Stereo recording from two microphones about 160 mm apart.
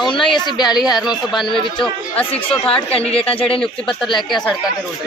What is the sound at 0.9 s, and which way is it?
A woman's voice, centre (ahead or behind).